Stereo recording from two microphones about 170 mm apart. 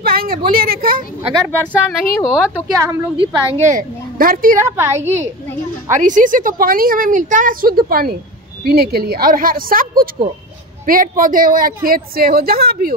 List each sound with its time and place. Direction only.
0.0 s a sound: 60° right (ahead or behind)
0.5 s a woman's voice: 60° right (ahead or behind)
1.5 s speech: 10° left (ahead or behind)
2.8 s a woman's voice: 15° right (ahead or behind)
3.2 s a woman's voice: 30° right (ahead or behind)
3.6 s a child's voice: 55° right (ahead or behind)
4.6 s a woman's voice: 15° right (ahead or behind)
5.0 s a woman's voice: 40° right (ahead or behind); by 12.9 s 60° right (ahead or behind)